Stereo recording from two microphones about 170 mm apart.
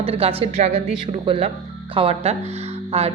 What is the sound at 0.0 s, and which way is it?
A woman's voice, 35° right (ahead or behind).